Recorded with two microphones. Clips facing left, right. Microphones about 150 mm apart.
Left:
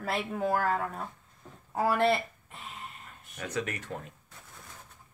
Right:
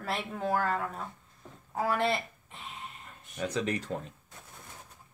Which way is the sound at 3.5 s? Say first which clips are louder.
Right 2 dB; 30° right (ahead or behind).